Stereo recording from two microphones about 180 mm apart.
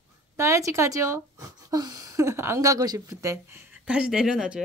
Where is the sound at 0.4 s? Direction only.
15° right (ahead or behind).